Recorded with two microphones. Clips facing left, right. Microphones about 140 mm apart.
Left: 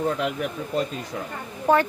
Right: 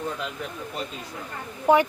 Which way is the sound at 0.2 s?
75° left (ahead or behind).